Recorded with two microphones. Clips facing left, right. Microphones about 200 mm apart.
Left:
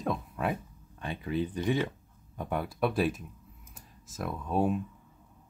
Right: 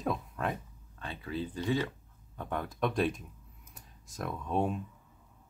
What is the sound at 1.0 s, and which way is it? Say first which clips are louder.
Speech: left 5 dB; 15° left (ahead or behind).